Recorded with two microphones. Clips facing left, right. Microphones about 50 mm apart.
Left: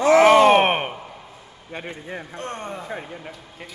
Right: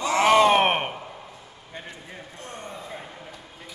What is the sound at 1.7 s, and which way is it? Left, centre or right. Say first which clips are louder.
Speech: left 8 dB; left.